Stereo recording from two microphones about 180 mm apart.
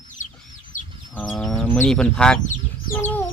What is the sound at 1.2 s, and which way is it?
Speech, 5° left (ahead or behind).